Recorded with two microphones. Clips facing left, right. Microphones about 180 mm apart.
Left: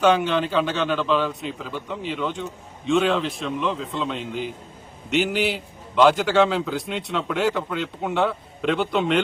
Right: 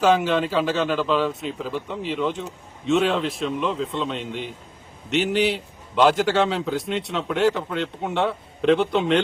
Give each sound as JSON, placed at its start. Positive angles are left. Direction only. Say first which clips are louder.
{"t": 0.0, "sound": "speech", "louder": "even", "side_deg": 0}